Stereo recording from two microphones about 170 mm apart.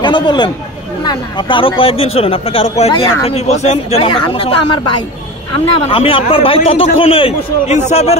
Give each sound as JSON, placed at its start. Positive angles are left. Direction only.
{"t": 0.0, "sound": "speech", "side_deg": 25}
{"t": 5.9, "sound": "speech", "side_deg": 35}